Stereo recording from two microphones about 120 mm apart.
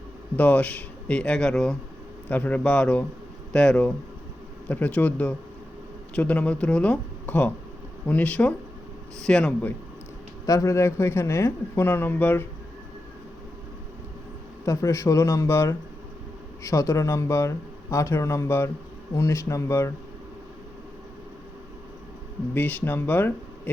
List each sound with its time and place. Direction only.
0.3 s speech: 15° left (ahead or behind)
10.4 s speech: 30° left (ahead or behind)
14.6 s speech: 25° left (ahead or behind)
22.5 s speech: 15° left (ahead or behind)